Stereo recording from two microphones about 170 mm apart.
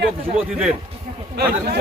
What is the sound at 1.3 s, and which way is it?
Speech, 70° right (ahead or behind).